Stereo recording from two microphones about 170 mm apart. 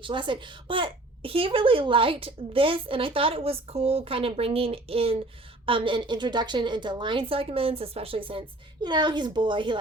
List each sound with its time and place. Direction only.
0.0 s a child's voice: 30° right (ahead or behind)